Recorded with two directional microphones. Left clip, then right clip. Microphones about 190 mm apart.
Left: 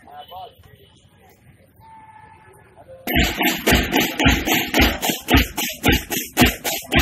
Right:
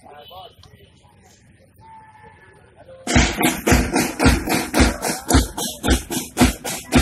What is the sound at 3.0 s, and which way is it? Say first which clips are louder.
Music: right 1 dB; 15° left (ahead or behind).